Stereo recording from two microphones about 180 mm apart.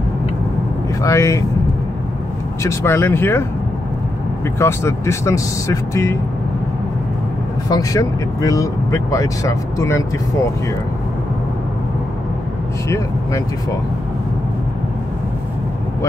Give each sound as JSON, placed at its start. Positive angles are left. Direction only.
{"t": 1.0, "sound": "speech", "side_deg": 15}
{"t": 2.6, "sound": "speech", "side_deg": 15}
{"t": 4.6, "sound": "speech", "side_deg": 15}
{"t": 7.7, "sound": "speech", "side_deg": 20}
{"t": 12.8, "sound": "speech", "side_deg": 15}